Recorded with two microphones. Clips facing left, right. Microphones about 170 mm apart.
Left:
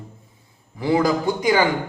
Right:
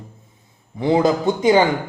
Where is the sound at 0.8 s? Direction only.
25° right (ahead or behind).